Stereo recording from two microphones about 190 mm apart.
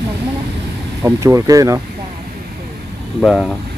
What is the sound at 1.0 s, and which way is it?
Speech, 15° right (ahead or behind).